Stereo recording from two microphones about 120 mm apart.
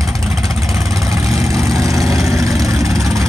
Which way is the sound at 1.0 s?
25° right (ahead or behind).